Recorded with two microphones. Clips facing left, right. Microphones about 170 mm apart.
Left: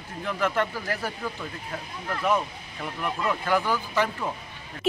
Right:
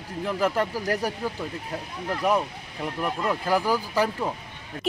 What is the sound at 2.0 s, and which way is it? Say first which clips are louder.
Speech: right 2 dB; 10° right (ahead or behind).